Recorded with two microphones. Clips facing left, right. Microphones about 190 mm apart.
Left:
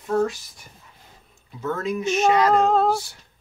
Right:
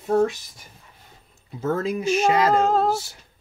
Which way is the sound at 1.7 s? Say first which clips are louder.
Right 2 dB; 30° right (ahead or behind).